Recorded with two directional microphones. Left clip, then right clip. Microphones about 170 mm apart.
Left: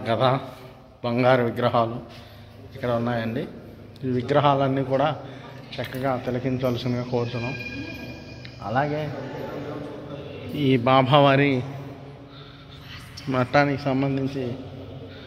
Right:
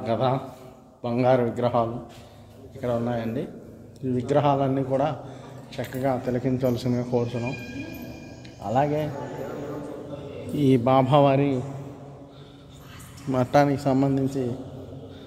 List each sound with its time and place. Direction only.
0.0 s a man's voice: 5° right (ahead or behind)
5.7 s speech: 15° right (ahead or behind)
8.6 s a man's voice: 30° right (ahead or behind)
10.5 s a man's voice: 35° right (ahead or behind)
10.8 s a man's voice: 15° right (ahead or behind)
13.3 s speech: 20° right (ahead or behind)